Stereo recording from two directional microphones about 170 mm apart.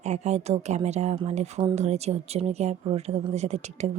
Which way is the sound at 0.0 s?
40° right (ahead or behind).